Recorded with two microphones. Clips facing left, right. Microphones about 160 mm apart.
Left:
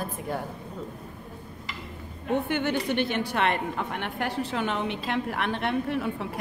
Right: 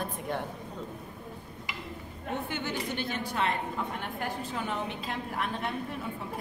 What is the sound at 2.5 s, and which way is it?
A woman's voice, 60° left (ahead or behind).